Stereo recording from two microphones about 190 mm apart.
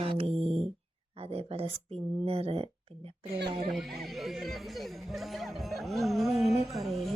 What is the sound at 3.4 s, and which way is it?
Speech, 60° right (ahead or behind).